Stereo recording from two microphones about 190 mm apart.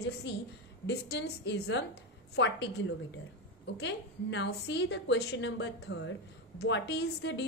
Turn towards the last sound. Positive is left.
turn(degrees=65)  # may be behind; listen again after turning